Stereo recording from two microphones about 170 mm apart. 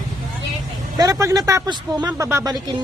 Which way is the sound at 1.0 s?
20° right (ahead or behind).